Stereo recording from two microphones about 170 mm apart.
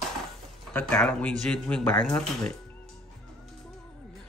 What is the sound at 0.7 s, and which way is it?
A man's voice, 10° left (ahead or behind).